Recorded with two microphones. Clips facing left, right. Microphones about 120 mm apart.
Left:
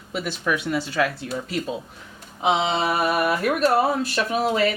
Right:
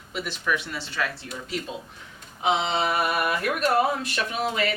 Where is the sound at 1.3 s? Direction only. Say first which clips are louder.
Left 5 dB; 45° left (ahead or behind).